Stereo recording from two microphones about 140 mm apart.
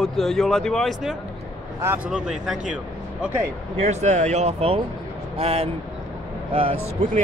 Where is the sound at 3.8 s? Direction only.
55° right (ahead or behind).